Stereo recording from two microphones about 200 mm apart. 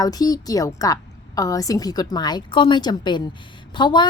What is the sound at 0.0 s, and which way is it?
A woman's voice, 20° left (ahead or behind).